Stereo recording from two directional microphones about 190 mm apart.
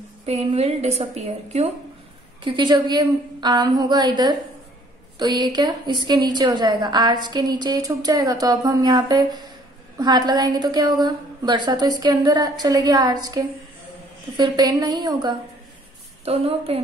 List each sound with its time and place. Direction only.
0.2 s a woman's voice: 35° right (ahead or behind)